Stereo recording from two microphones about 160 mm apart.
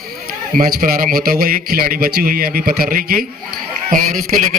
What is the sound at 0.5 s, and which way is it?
A man's voice, 60° right (ahead or behind).